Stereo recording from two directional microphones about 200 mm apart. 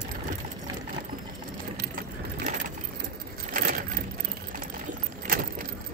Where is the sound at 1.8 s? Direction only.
45° right (ahead or behind).